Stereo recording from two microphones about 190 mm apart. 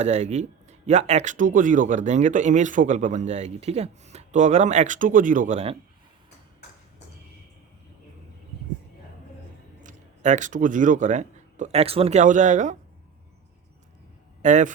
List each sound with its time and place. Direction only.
0.0 s speech: 35° right (ahead or behind)
9.8 s speech: 40° right (ahead or behind)
14.4 s speech: 40° right (ahead or behind)